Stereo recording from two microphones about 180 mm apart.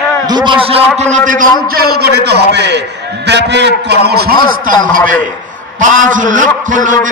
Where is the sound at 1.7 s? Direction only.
60° right (ahead or behind).